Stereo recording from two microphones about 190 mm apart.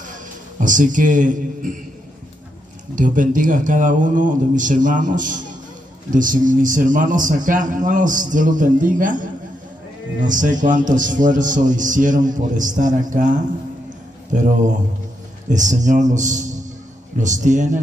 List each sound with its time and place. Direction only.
0.0 s a man's voice: 45° right (ahead or behind)
3.0 s a man's voice: 45° right (ahead or behind)
13.8 s a sound: 40° right (ahead or behind)
15.5 s a man's voice: 40° right (ahead or behind)